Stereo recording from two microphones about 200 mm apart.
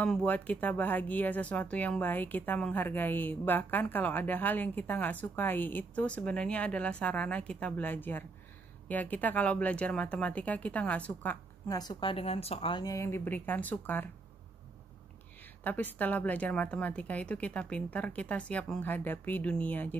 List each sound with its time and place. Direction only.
0.0 s speech: 5° left (ahead or behind)
11.7 s speech: 20° left (ahead or behind)
15.6 s speech: 10° left (ahead or behind)